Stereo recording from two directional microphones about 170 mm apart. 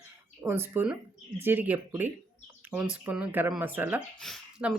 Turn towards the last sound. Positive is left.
turn(degrees=0)  # may be behind; listen again after turning